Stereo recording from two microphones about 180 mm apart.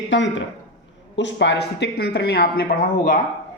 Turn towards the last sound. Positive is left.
turn(degrees=50)  # may be behind; listen again after turning